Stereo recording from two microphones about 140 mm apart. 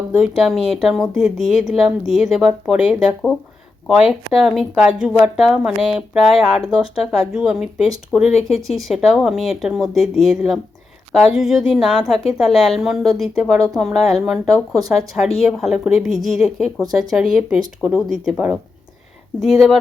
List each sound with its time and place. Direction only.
0.1 s speech: 5° right (ahead or behind)
8.2 s speech: 50° left (ahead or behind)
8.4 s speech: centre (ahead or behind)